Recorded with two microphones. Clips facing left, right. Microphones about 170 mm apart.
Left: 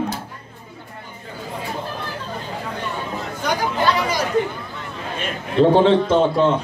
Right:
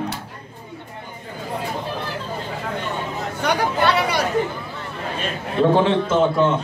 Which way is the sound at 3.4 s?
65° right (ahead or behind).